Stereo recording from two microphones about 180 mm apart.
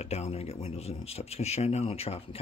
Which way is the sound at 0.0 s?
35° left (ahead or behind).